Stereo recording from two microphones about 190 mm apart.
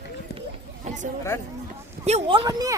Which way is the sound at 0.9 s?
35° right (ahead or behind).